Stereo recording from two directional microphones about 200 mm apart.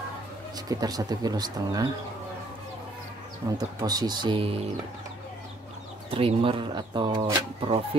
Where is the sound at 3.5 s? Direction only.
20° right (ahead or behind).